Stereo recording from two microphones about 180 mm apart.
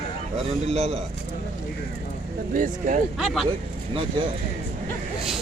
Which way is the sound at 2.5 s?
45° right (ahead or behind).